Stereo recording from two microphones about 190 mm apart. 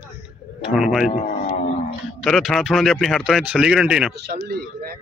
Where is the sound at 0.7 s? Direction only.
Centre (ahead or behind).